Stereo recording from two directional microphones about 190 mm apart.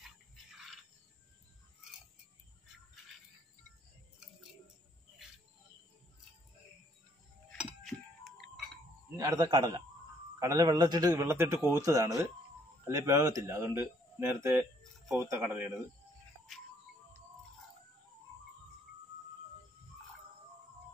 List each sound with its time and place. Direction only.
9.1 s a man's voice: 20° right (ahead or behind)